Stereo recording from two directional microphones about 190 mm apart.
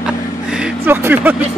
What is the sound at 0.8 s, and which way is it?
Speech, 10° right (ahead or behind).